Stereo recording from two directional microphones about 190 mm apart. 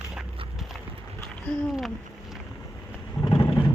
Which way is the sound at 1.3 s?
Centre (ahead or behind).